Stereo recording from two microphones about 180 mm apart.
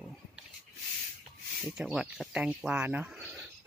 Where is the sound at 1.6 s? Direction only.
5° right (ahead or behind).